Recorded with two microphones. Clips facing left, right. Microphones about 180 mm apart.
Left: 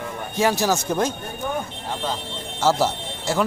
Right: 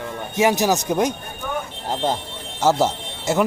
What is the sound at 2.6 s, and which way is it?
Speech, 20° right (ahead or behind).